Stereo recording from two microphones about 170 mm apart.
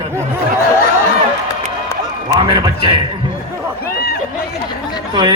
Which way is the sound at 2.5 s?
30° right (ahead or behind).